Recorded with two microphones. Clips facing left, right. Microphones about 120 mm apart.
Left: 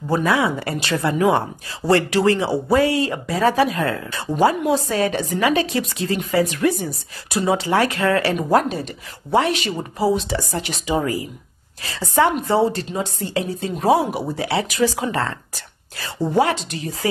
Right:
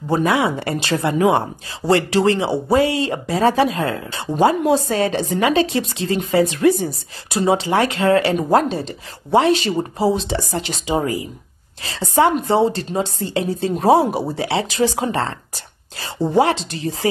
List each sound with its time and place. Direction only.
0.1 s a woman's voice: 25° right (ahead or behind)